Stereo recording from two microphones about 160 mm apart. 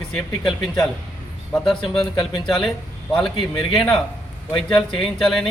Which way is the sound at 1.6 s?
Centre (ahead or behind).